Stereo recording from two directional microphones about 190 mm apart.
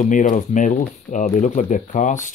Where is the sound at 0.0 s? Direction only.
45° left (ahead or behind).